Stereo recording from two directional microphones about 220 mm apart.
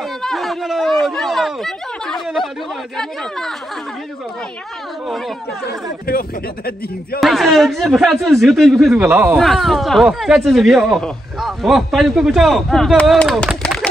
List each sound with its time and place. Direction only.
0.2 s a sound: centre (ahead or behind)
2.2 s speech: centre (ahead or behind)
6.0 s speech: 45° left (ahead or behind)
7.2 s speech: centre (ahead or behind)